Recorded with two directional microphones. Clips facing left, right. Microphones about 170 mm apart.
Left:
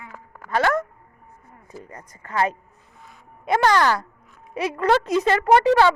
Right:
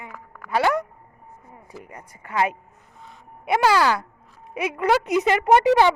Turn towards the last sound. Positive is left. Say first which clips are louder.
# even
turn(degrees=-15)  # may be behind; listen again after turning